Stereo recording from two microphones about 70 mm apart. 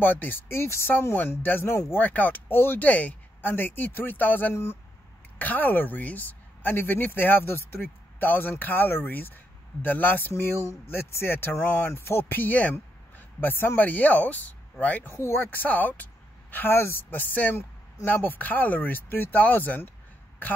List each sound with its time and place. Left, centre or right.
0.0 s speech: left
15.1 s speech: left